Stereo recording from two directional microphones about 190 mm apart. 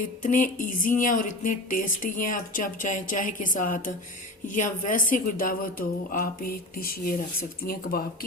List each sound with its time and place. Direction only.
0.0 s speech: 45° left (ahead or behind)